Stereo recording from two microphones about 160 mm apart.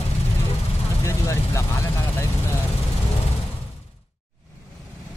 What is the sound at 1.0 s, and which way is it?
Vehicle, 20° left (ahead or behind).